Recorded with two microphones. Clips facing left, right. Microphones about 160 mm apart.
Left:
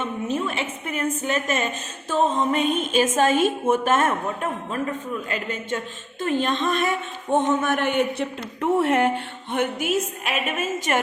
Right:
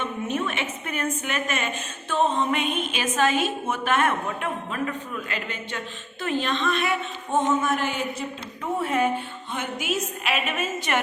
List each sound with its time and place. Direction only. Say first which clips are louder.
0.4 s a woman's voice: left 2 dB; 30° left (ahead or behind)
7.3 s speech: left 2 dB; 60° left (ahead or behind); by 11.0 s 40° left (ahead or behind)